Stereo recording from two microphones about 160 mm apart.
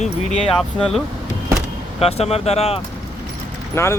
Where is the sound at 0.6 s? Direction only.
Centre (ahead or behind).